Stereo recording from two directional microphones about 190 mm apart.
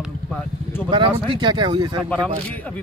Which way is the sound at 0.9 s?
25° right (ahead or behind).